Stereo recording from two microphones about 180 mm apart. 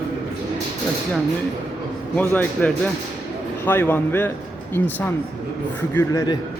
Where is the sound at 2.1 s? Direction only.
10° left (ahead or behind).